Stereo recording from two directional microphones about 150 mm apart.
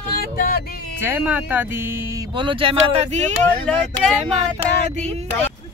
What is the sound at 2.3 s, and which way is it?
Speech, 35° right (ahead or behind).